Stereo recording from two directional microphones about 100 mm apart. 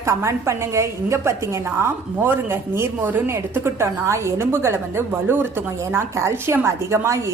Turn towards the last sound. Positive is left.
turn(degrees=-30)  # may be behind; listen again after turning